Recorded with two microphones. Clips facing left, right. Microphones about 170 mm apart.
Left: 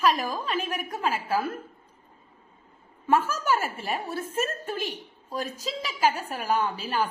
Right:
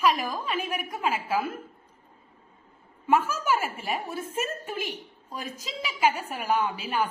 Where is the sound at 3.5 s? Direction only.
15° right (ahead or behind).